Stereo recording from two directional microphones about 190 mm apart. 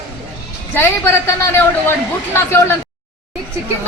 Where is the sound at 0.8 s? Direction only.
10° left (ahead or behind).